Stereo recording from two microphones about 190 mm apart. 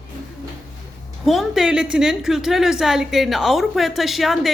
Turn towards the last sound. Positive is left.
turn(degrees=0)  # may be behind; listen again after turning